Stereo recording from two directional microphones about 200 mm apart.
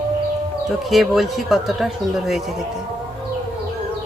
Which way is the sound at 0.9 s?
Centre (ahead or behind).